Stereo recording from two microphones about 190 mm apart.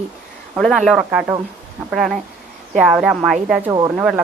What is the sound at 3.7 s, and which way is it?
Speech, 20° right (ahead or behind).